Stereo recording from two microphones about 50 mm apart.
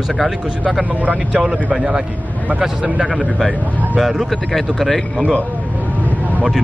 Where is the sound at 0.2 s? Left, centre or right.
Centre.